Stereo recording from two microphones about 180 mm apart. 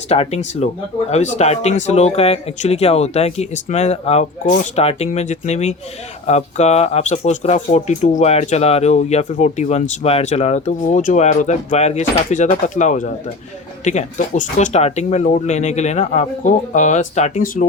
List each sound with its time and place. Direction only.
0.1 s speech: 35° left (ahead or behind)